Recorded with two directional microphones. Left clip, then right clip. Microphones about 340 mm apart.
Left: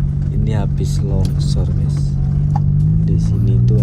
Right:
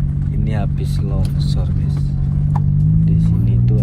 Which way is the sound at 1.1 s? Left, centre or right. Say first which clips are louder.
Left 2 dB; centre.